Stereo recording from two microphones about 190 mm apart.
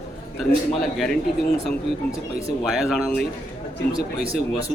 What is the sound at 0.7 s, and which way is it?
Speech, centre (ahead or behind).